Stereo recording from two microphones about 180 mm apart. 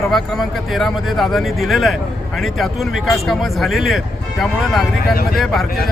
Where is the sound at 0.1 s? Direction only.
Centre (ahead or behind).